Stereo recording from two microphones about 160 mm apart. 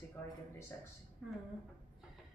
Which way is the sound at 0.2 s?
10° left (ahead or behind).